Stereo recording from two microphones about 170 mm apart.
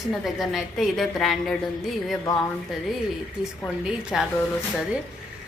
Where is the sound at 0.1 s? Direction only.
Centre (ahead or behind).